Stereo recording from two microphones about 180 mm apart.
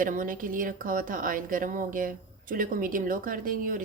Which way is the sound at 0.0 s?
50° right (ahead or behind).